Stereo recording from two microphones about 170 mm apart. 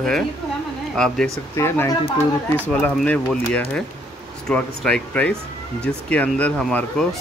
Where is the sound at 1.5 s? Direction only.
15° left (ahead or behind).